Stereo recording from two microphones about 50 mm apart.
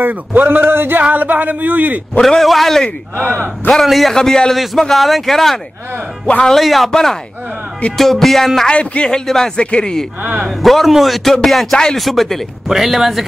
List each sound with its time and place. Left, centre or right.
0.0 s a man's voice: right
2.2 s speech: centre
3.2 s speech: right
3.7 s speech: centre
4.1 s a man's voice: centre
8.6 s speech: left
9.2 s a man's voice: centre
9.6 s speech: left
10.2 s a man's voice: right
10.5 s speech: centre